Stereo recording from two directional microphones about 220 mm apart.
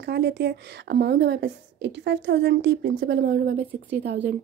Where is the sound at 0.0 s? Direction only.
50° right (ahead or behind).